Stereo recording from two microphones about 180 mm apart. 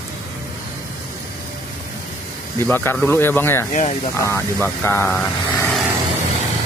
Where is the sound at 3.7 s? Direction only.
40° left (ahead or behind).